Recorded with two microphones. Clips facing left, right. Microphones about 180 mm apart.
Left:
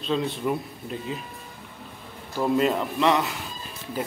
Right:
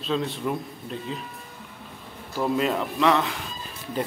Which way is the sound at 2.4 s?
Centre (ahead or behind).